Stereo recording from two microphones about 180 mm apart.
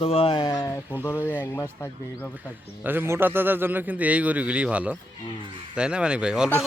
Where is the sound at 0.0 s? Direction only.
30° left (ahead or behind); by 2.3 s 10° left (ahead or behind).